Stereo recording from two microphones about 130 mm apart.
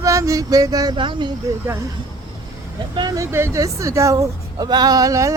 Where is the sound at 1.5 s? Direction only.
25° right (ahead or behind).